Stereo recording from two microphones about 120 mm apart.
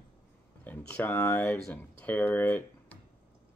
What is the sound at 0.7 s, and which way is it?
Speech, 15° left (ahead or behind).